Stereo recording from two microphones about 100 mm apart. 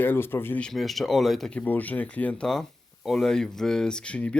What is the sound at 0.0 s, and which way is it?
Speech, 20° left (ahead or behind).